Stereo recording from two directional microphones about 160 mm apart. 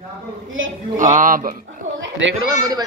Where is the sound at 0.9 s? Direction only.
55° right (ahead or behind).